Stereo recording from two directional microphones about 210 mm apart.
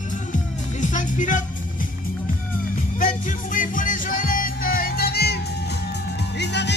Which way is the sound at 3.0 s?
40° left (ahead or behind).